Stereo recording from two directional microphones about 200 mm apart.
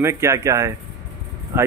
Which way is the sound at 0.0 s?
15° right (ahead or behind).